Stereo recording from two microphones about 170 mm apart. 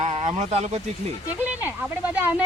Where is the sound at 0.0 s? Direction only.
45° right (ahead or behind).